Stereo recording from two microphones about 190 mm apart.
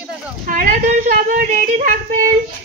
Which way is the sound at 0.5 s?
45° right (ahead or behind).